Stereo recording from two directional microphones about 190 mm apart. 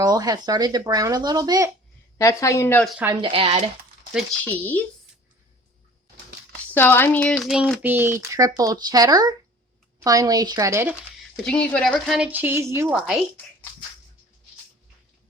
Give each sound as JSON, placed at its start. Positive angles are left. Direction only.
{"t": 0.0, "sound": "speech", "side_deg": -20}
{"t": 2.1, "sound": "speech", "side_deg": 15}
{"t": 3.2, "sound": "speech", "side_deg": -30}
{"t": 4.1, "sound": "speech", "side_deg": 5}
{"t": 6.7, "sound": "speech", "side_deg": 10}
{"t": 11.4, "sound": "speech", "side_deg": 5}